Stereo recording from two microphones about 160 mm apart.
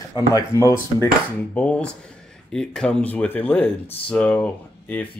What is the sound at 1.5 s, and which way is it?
Speech, 5° left (ahead or behind).